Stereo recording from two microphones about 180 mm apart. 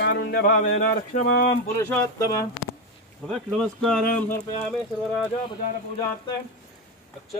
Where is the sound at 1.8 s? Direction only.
15° left (ahead or behind).